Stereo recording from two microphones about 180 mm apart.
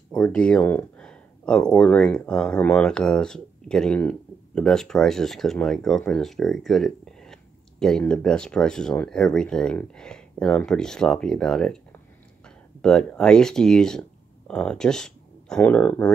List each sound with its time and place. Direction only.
0.1 s speech: 5° left (ahead or behind)
12.8 s speech: 5° left (ahead or behind)